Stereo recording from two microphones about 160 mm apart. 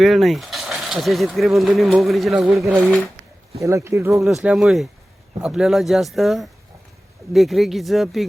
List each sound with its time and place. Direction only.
0.0 s speech: centre (ahead or behind)
3.6 s speech: 20° right (ahead or behind)
4.4 s speech: centre (ahead or behind)